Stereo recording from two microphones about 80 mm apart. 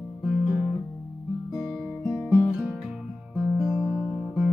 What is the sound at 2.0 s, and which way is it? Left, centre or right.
Guitar, centre.